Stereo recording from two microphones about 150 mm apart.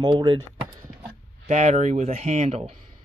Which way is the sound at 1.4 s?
50° right (ahead or behind).